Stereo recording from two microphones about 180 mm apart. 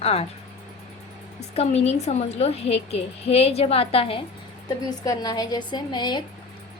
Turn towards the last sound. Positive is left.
turn(degrees=25)  # may be behind; listen again after turning